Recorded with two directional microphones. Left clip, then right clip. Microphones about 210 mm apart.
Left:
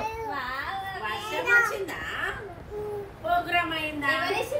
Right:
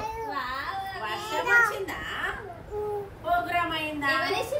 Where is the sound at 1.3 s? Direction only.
Centre (ahead or behind).